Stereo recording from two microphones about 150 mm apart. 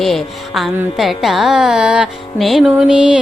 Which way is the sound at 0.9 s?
Centre (ahead or behind).